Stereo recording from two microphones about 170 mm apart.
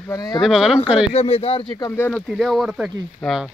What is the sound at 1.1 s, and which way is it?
Speech, 35° left (ahead or behind).